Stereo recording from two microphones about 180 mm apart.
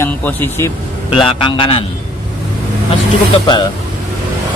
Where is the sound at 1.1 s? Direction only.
30° left (ahead or behind).